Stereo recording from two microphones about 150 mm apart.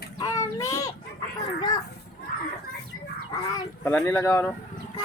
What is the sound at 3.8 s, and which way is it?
Speech, 10° left (ahead or behind).